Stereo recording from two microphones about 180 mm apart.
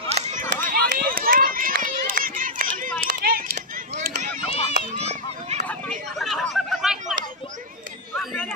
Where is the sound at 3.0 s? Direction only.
55° right (ahead or behind).